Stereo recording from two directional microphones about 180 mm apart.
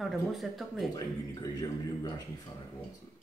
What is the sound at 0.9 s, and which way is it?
Speech, 20° left (ahead or behind).